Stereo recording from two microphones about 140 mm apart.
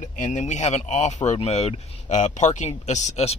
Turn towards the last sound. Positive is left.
turn(degrees=55)  # may be behind; listen again after turning